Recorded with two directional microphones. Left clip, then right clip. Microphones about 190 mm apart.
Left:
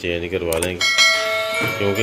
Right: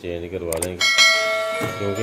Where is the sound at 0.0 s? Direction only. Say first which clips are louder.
Left 5 dB; centre (ahead or behind).